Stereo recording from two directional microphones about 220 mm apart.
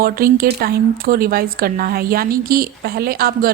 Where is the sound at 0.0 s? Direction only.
40° right (ahead or behind).